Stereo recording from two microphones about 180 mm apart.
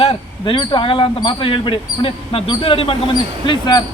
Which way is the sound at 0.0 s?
30° left (ahead or behind).